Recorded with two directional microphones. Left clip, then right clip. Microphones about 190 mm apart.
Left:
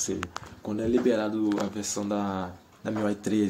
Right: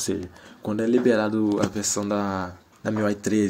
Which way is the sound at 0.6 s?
55° right (ahead or behind).